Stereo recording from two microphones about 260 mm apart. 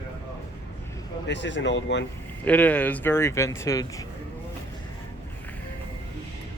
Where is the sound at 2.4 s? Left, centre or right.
Centre.